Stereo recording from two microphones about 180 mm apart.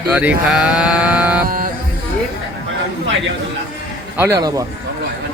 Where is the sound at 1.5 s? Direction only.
50° right (ahead or behind).